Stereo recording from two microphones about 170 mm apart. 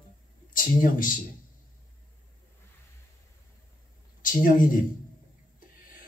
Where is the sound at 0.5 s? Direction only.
55° left (ahead or behind).